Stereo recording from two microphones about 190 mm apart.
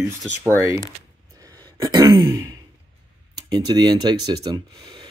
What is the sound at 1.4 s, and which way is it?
Throat clearing, 20° right (ahead or behind).